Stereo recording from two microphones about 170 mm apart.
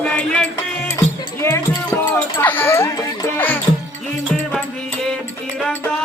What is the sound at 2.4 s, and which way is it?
Dog, 10° left (ahead or behind).